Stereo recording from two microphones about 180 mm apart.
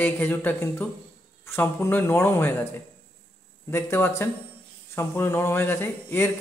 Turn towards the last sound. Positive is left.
turn(degrees=10)  # may be behind; listen again after turning